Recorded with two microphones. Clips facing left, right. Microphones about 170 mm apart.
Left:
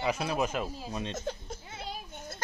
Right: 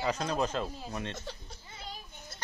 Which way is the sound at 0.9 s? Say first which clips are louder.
Left 3 dB; 20° left (ahead or behind).